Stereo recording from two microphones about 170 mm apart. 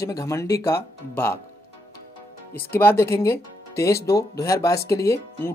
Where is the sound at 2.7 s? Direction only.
15° left (ahead or behind).